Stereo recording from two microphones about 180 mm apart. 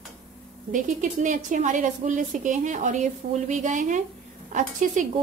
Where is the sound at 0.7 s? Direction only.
45° right (ahead or behind).